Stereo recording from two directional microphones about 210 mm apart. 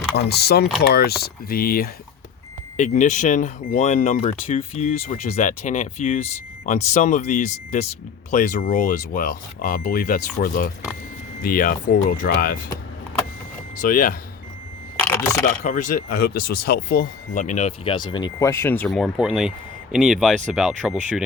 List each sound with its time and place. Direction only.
0.1 s speech: 50° left (ahead or behind)
13.7 s speech: 40° left (ahead or behind)
14.9 s a sound: 10° left (ahead or behind)
15.4 s speech: 35° left (ahead or behind); by 21.2 s 5° right (ahead or behind)